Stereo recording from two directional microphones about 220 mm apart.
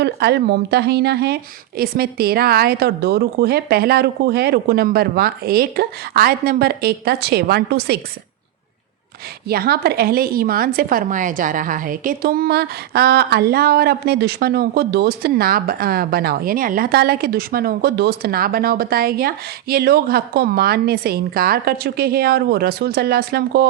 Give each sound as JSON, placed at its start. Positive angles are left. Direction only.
{"t": 0.0, "sound": "a woman's voice", "side_deg": -50}
{"t": 9.5, "sound": "a woman's voice", "side_deg": -45}